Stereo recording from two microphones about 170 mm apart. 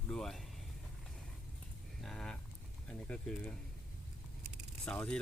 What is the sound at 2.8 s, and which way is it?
Speech, 5° left (ahead or behind).